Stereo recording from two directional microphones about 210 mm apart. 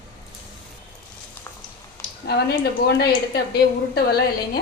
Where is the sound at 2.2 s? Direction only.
50° left (ahead or behind).